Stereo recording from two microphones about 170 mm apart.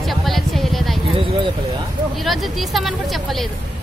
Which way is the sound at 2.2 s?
Centre (ahead or behind).